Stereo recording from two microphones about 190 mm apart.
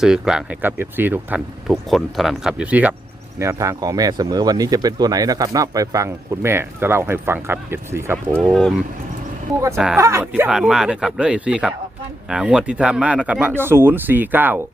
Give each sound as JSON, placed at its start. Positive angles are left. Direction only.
{"t": 0.0, "sound": "speech", "side_deg": -5}
{"t": 8.4, "sound": "speech", "side_deg": 0}
{"t": 9.7, "sound": "speech", "side_deg": -5}
{"t": 10.0, "sound": "speech", "side_deg": -15}